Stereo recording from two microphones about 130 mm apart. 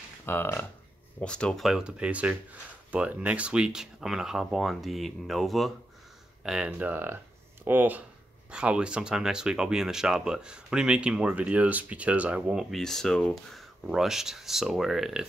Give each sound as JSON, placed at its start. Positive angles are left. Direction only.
{"t": 0.2, "sound": "speech", "side_deg": 15}